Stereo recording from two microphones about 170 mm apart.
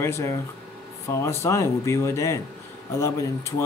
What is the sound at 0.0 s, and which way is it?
Speech, 15° left (ahead or behind).